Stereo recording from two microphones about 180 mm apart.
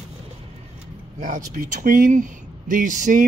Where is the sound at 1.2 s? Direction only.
50° right (ahead or behind).